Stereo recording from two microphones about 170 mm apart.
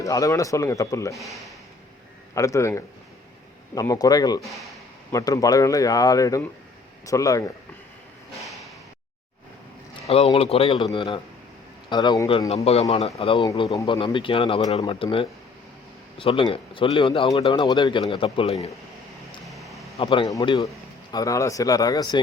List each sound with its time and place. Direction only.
0.0 s speech: 20° left (ahead or behind)
1.1 s speech: centre (ahead or behind)
2.3 s a man's voice: 20° left (ahead or behind)
9.9 s a man's voice: 35° left (ahead or behind); by 12.5 s 20° left (ahead or behind)
12.9 s speech: 35° left (ahead or behind)
13.4 s speech: 20° left (ahead or behind)
19.5 s a sound: centre (ahead or behind)
20.0 s speech: 30° left (ahead or behind)